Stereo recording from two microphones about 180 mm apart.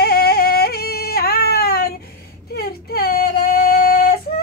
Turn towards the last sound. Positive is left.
turn(degrees=60)  # may be behind; listen again after turning